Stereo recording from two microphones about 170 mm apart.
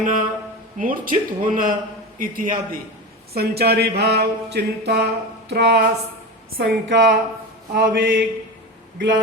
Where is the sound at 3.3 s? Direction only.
70° right (ahead or behind).